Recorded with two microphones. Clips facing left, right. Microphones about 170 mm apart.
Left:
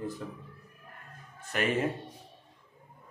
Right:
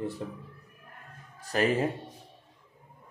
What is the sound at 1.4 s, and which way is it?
Speech, 35° right (ahead or behind).